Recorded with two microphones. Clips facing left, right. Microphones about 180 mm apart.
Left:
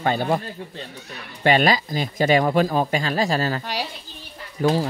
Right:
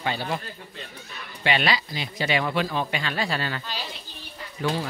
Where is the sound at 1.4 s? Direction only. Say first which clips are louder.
Left 7 dB; 45° left (ahead or behind).